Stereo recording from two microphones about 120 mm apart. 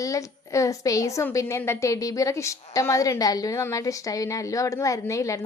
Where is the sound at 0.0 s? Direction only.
25° left (ahead or behind).